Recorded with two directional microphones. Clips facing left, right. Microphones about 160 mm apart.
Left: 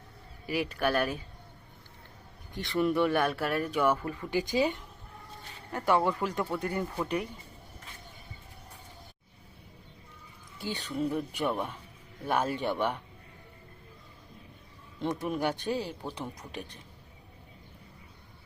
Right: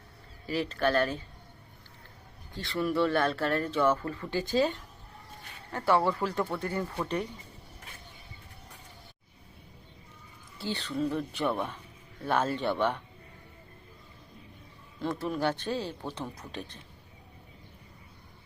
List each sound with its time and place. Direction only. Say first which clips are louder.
0.4 s speech: right 1 dB; 15° left (ahead or behind)
2.6 s speech: left 1 dB; 20° left (ahead or behind)
10.6 s speech: right 1 dB; 15° left (ahead or behind)
14.9 s speech: even; 20° left (ahead or behind)